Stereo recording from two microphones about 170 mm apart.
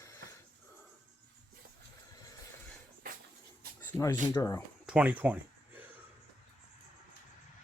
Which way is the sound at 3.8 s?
15° left (ahead or behind).